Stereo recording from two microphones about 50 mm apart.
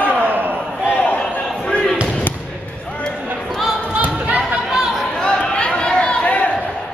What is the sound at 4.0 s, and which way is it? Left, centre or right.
Basketball bounce, right.